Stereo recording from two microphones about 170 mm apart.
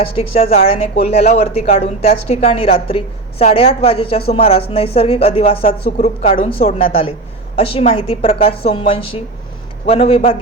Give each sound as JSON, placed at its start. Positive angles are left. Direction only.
{"t": 0.2, "sound": "a woman's voice", "side_deg": 35}